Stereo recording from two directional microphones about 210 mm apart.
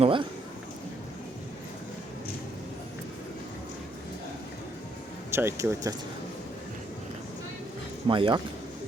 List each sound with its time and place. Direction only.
0.0 s speech: 25° right (ahead or behind)
5.3 s speech: 10° right (ahead or behind)
8.0 s speech: 25° right (ahead or behind)